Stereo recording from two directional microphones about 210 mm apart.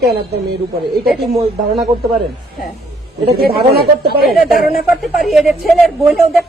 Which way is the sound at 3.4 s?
50° right (ahead or behind).